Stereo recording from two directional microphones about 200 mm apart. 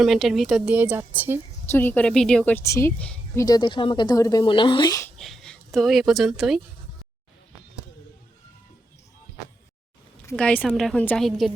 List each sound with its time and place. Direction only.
0.0 s a woman's voice: centre (ahead or behind)
1.7 s a woman's voice: 10° left (ahead or behind)
3.4 s speech: 20° left (ahead or behind)
5.1 s speech: centre (ahead or behind)
10.2 s a woman's voice: 5° left (ahead or behind)